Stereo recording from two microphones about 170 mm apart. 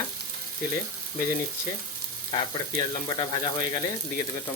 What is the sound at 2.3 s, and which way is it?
Speech, 25° left (ahead or behind).